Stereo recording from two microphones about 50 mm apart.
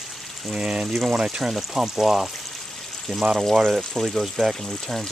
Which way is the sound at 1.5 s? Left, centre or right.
Centre.